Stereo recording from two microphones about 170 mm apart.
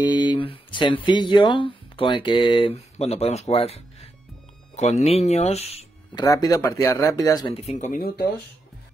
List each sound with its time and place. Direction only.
0.0 s speech: 25° left (ahead or behind)
6.1 s speech: 20° left (ahead or behind)
7.5 s speech: 40° left (ahead or behind)